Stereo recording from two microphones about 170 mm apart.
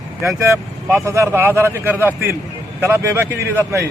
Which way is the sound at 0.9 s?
15° right (ahead or behind).